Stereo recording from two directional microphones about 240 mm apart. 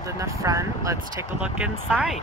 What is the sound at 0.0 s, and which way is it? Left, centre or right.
Speech, centre.